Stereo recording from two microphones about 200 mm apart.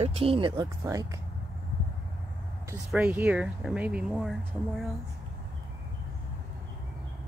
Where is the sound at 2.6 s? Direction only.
10° right (ahead or behind).